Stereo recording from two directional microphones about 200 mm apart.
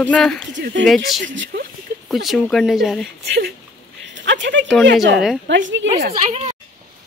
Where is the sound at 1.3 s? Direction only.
65° right (ahead or behind).